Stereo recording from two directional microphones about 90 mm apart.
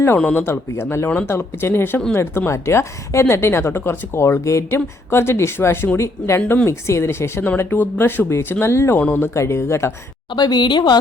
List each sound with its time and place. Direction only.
0.2 s speech: 15° left (ahead or behind)
0.4 s a woman's voice: 25° left (ahead or behind)
10.2 s a woman's voice: 50° left (ahead or behind)